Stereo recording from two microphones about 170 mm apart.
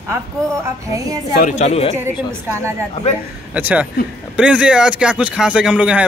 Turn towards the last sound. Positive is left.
turn(degrees=-5)  # may be behind; listen again after turning